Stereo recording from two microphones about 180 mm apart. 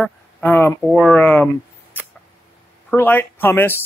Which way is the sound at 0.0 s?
10° left (ahead or behind).